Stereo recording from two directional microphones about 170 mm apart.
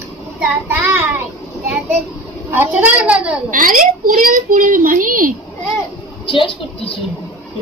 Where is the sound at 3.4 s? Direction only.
50° right (ahead or behind).